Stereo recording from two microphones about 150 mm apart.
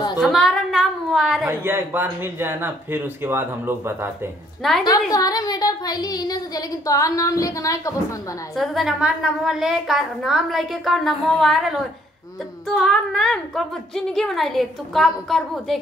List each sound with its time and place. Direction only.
0.2 s a sound: centre (ahead or behind)
1.5 s speech: 15° right (ahead or behind)
4.6 s a woman's voice: centre (ahead or behind)
5.1 s speech: 25° left (ahead or behind)
8.5 s a woman's voice: centre (ahead or behind)